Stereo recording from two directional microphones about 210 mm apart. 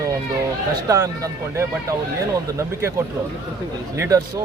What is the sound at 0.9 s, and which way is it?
Speech, 15° right (ahead or behind).